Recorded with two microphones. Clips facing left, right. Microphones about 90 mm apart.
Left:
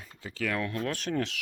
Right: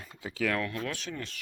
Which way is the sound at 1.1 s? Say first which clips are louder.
Left 9 dB; 75° left (ahead or behind).